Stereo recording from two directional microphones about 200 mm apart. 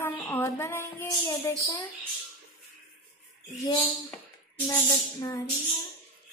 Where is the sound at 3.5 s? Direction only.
10° left (ahead or behind).